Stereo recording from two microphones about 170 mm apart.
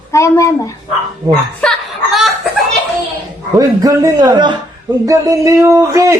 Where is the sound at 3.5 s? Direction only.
20° right (ahead or behind).